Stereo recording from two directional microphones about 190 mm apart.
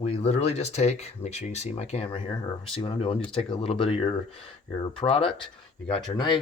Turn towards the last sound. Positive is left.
turn(degrees=25)  # may be behind; listen again after turning